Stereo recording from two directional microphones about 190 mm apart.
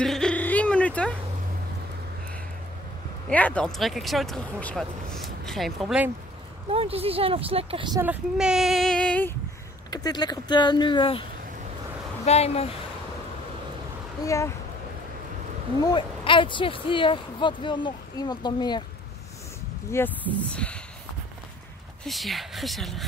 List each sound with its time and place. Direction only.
0.0 s music: 5° left (ahead or behind)
3.3 s speech: 5° left (ahead or behind)
6.7 s speech: 30° right (ahead or behind)
8.0 s speech: 5° right (ahead or behind)
9.8 s speech: 20° left (ahead or behind)
12.3 s speech: 35° left (ahead or behind)
14.2 s speech: 15° left (ahead or behind)
15.8 s speech: 25° left (ahead or behind)
19.9 s speech: 10° left (ahead or behind)
22.0 s speech: centre (ahead or behind)